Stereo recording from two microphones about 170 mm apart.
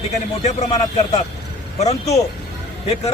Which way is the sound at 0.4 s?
40° left (ahead or behind).